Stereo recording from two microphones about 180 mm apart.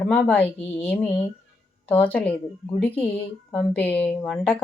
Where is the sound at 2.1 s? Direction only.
10° left (ahead or behind).